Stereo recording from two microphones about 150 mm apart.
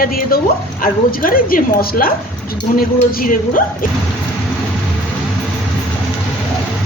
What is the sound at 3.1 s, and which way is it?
Speech, 70° left (ahead or behind).